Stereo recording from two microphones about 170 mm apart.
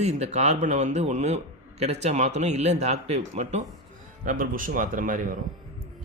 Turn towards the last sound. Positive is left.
turn(degrees=-50)  # may be behind; listen again after turning